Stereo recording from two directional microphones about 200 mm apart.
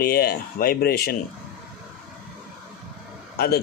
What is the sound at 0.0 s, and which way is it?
A man's voice, 50° left (ahead or behind).